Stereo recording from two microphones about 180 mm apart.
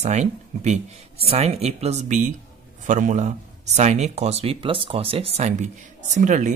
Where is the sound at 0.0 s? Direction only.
40° right (ahead or behind).